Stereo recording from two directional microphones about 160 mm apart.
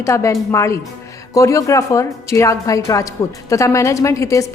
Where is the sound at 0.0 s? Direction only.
20° left (ahead or behind).